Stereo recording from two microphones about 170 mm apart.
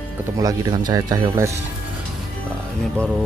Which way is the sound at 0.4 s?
20° right (ahead or behind).